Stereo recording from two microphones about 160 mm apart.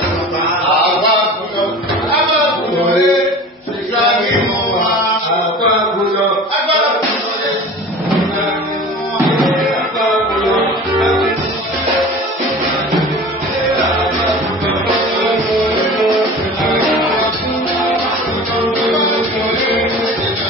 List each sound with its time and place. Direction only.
3.0 s a sound: centre (ahead or behind)
9.4 s music: centre (ahead or behind)
15.2 s music: centre (ahead or behind)